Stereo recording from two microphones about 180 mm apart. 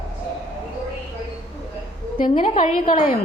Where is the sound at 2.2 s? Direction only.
50° left (ahead or behind).